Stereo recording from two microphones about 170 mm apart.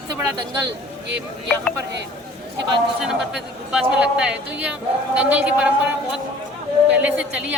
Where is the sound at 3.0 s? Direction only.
5° right (ahead or behind).